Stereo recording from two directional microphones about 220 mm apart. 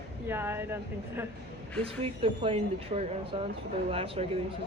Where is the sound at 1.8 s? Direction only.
25° right (ahead or behind).